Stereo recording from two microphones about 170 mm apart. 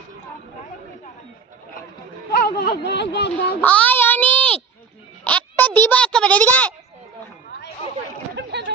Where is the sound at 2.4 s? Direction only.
65° left (ahead or behind); by 3.4 s 85° left.